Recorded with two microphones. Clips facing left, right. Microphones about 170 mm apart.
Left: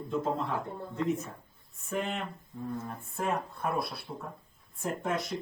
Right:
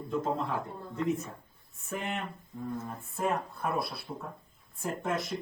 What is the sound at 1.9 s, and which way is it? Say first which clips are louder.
Speech: left 2 dB; centre (ahead or behind).